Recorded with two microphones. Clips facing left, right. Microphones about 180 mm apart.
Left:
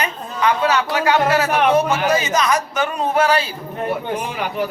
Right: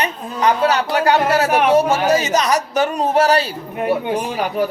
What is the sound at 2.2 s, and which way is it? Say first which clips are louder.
Speech: right 1 dB; 40° right (ahead or behind).